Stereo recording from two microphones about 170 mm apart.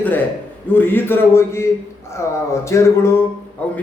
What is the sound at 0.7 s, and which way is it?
A man's voice, 10° left (ahead or behind).